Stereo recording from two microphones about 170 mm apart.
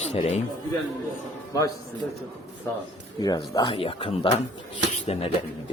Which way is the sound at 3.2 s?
20° left (ahead or behind).